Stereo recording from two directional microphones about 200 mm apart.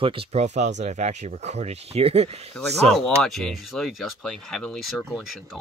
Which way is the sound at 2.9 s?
Centre (ahead or behind).